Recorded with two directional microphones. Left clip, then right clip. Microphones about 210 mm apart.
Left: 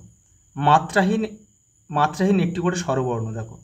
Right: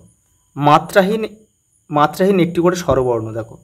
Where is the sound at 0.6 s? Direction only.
35° right (ahead or behind).